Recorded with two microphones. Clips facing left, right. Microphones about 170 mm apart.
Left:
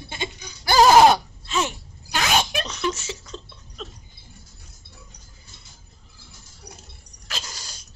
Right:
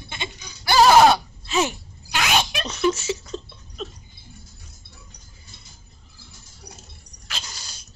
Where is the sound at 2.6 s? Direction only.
5° right (ahead or behind).